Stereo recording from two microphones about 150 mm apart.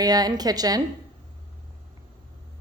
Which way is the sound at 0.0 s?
25° right (ahead or behind).